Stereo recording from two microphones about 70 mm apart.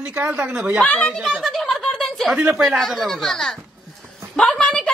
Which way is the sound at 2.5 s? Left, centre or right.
Centre.